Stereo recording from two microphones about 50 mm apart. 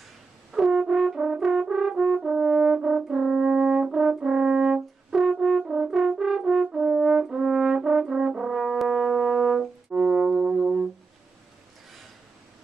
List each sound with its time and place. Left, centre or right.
0.5 s brass instrument: centre
0.8 s french horn: right
1.7 s brass instrument: centre
5.4 s french horn: right
5.7 s french horn: centre
6.5 s brass instrument: centre